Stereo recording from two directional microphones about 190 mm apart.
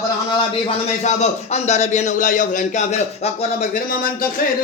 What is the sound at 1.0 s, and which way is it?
Speech, 35° left (ahead or behind).